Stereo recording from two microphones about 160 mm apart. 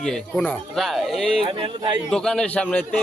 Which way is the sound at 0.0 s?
5° left (ahead or behind).